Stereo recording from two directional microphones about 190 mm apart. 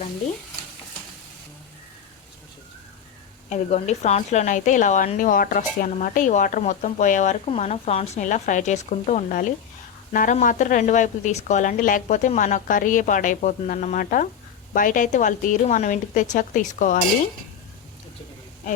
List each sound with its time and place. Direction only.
3.5 s a woman's voice: 35° left (ahead or behind)